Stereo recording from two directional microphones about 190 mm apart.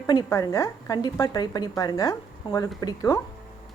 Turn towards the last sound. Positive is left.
turn(degrees=20)  # may be behind; listen again after turning